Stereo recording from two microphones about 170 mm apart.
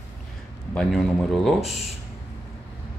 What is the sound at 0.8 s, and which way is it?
Speech, centre (ahead or behind).